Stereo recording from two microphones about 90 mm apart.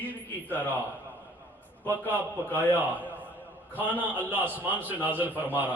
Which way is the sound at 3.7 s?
20° right (ahead or behind).